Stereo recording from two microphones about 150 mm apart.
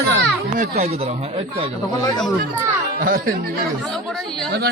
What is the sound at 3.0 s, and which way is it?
Speech, 75° right (ahead or behind).